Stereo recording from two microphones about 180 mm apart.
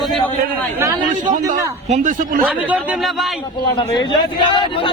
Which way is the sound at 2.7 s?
Centre (ahead or behind).